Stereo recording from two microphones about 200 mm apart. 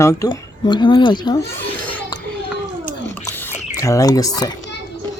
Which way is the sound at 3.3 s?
15° left (ahead or behind).